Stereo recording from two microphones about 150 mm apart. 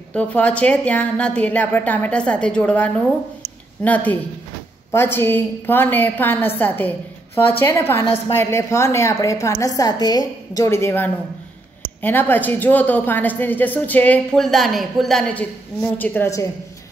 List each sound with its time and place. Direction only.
0.1 s a woman's voice: 10° left (ahead or behind)